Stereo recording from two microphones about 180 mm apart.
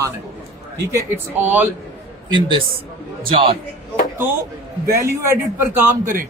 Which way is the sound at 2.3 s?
25° right (ahead or behind).